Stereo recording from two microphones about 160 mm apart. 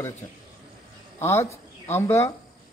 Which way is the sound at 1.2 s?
15° left (ahead or behind).